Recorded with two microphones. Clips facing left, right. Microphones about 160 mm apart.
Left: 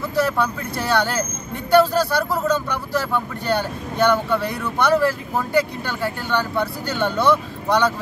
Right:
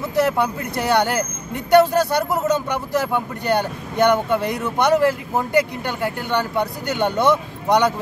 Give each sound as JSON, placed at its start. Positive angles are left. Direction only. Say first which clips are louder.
{"t": 0.1, "sound": "speech", "louder": "right 2 dB", "side_deg": -20}